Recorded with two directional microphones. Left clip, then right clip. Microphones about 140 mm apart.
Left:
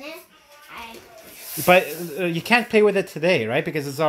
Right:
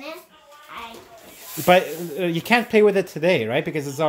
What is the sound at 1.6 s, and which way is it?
Speech, 20° right (ahead or behind).